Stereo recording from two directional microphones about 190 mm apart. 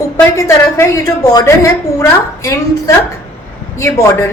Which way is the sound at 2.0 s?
15° left (ahead or behind).